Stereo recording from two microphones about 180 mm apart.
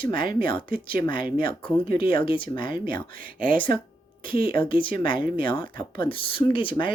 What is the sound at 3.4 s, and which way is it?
Speech, 50° right (ahead or behind).